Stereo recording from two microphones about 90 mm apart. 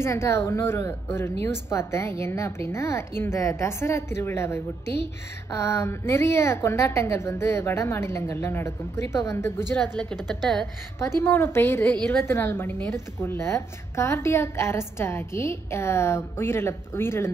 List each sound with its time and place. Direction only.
0.0 s a woman's voice: 30° left (ahead or behind)
9.8 s a woman's voice: 10° left (ahead or behind)
10.1 s a woman's voice: centre (ahead or behind)
11.0 s a woman's voice: 25° left (ahead or behind)